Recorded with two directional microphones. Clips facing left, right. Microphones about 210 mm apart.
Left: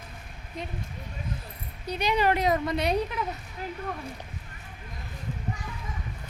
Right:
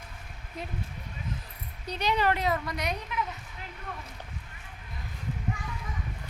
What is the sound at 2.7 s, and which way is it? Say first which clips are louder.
Speech: left 6 dB; 30° left (ahead or behind).